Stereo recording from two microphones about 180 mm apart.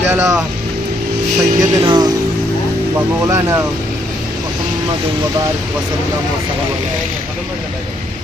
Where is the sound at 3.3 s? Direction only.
15° right (ahead or behind).